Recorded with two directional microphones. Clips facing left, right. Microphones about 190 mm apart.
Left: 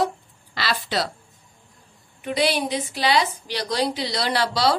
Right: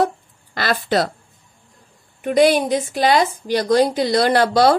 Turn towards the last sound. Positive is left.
turn(degrees=-50)  # may be behind; listen again after turning